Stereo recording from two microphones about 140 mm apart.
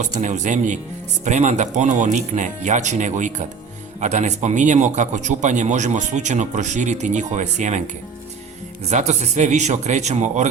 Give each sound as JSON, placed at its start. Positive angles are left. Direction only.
{"t": 0.0, "sound": "a man's voice", "side_deg": -60}
{"t": 8.9, "sound": "a man's voice", "side_deg": -55}